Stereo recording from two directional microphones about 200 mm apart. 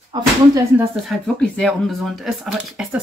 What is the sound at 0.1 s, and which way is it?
Speech, 20° right (ahead or behind).